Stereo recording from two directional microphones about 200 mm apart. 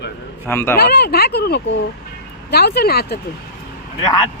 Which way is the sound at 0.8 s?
55° left (ahead or behind).